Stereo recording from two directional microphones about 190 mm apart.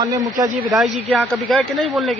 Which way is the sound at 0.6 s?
Centre (ahead or behind).